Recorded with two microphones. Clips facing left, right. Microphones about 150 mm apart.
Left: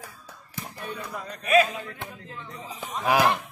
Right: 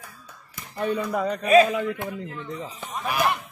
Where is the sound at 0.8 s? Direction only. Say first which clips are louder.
Right 13 dB; 65° right (ahead or behind).